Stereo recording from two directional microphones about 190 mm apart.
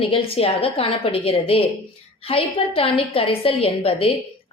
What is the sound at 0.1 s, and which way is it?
A woman's voice, 30° left (ahead or behind).